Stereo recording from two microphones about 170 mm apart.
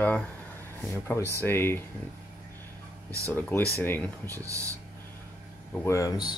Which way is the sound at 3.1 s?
20° right (ahead or behind).